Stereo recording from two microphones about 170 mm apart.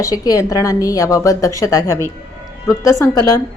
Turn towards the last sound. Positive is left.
turn(degrees=20)  # may be behind; listen again after turning